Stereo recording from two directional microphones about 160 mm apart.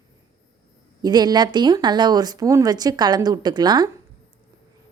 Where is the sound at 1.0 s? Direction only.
25° right (ahead or behind).